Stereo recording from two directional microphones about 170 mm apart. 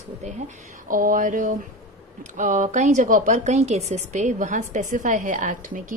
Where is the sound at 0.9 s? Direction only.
55° right (ahead or behind).